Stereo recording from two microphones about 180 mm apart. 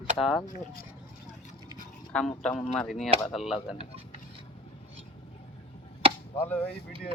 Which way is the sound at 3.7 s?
35° right (ahead or behind).